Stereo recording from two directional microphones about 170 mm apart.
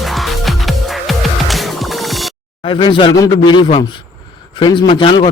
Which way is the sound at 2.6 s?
30° left (ahead or behind).